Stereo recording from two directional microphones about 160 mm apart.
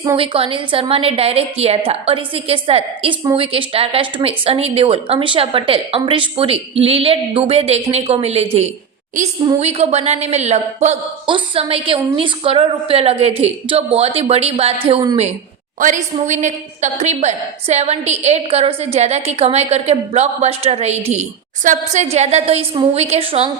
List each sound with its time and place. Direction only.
0.2 s speech: 35° right (ahead or behind)
9.2 s a woman's voice: 50° right (ahead or behind)
11.3 s speech: 35° right (ahead or behind)
15.8 s a woman's voice: 55° right (ahead or behind); by 23.5 s 35° right (ahead or behind)